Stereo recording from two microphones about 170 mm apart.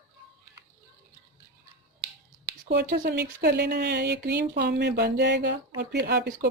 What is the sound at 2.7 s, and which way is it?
Speech, 75° right (ahead or behind).